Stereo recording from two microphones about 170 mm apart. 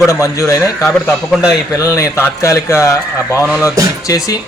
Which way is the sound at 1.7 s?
20° left (ahead or behind).